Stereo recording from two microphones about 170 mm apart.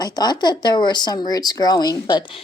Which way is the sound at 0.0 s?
25° left (ahead or behind).